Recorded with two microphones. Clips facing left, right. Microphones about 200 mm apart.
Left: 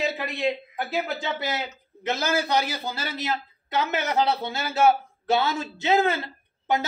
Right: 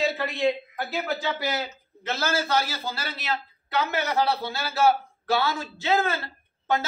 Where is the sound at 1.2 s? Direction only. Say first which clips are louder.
Right 1 dB; 25° left (ahead or behind).